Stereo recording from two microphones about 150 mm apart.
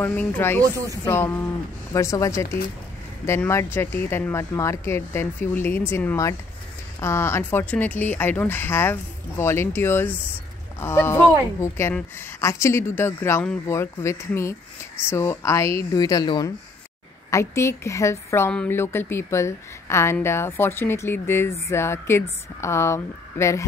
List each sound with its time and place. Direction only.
0.0 s a woman's voice: 15° left (ahead or behind)